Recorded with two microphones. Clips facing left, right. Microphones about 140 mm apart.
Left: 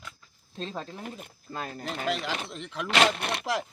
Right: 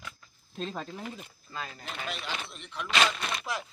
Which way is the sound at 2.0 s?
90° left.